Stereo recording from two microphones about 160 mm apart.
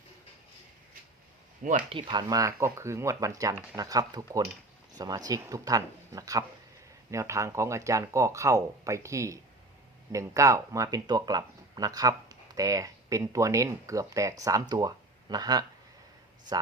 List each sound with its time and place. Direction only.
1.9 s speech: 30° right (ahead or behind)
2.2 s speech: 20° right (ahead or behind)